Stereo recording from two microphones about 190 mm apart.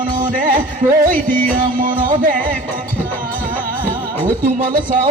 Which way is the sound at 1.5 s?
45° right (ahead or behind).